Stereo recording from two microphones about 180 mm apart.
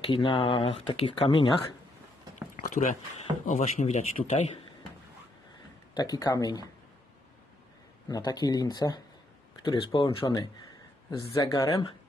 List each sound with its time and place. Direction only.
0.0 s speech: 30° left (ahead or behind)
2.5 s speech: 45° left (ahead or behind)
5.9 s speech: 20° left (ahead or behind)
8.1 s speech: 20° left (ahead or behind)